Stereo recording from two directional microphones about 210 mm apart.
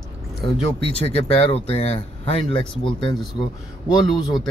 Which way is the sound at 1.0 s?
30° left (ahead or behind).